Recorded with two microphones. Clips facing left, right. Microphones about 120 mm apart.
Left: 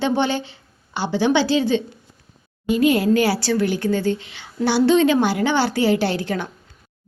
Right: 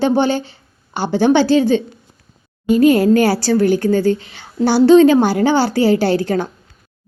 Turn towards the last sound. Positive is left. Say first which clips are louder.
# right 6 dB
turn(degrees=-40)  # may be behind; listen again after turning